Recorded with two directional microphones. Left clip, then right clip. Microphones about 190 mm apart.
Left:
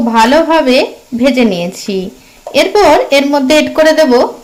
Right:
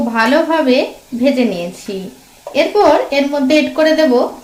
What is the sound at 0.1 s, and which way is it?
A woman's voice, 35° left (ahead or behind).